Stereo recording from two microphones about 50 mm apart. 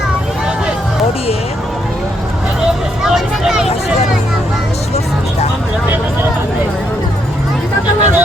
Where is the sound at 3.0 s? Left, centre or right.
Centre.